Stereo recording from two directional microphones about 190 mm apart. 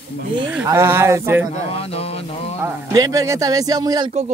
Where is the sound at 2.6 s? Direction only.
15° right (ahead or behind).